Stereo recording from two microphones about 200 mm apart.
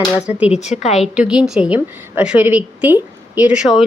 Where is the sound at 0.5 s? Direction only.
35° left (ahead or behind).